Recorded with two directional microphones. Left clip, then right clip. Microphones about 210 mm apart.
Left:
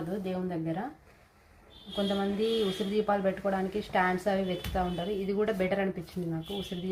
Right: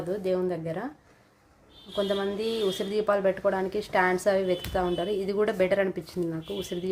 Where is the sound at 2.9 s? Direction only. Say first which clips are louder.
Right 4 dB; 55° right (ahead or behind).